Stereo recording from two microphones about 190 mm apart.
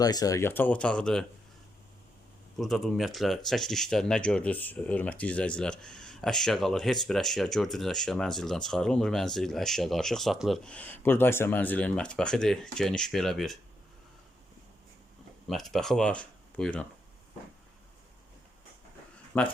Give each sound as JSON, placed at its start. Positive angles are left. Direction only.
{"t": 0.0, "sound": "speech", "side_deg": 20}
{"t": 2.6, "sound": "speech", "side_deg": 0}
{"t": 15.4, "sound": "speech", "side_deg": 0}
{"t": 19.3, "sound": "speech", "side_deg": 10}